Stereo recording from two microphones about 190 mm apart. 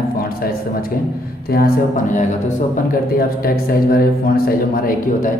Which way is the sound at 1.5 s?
45° left (ahead or behind).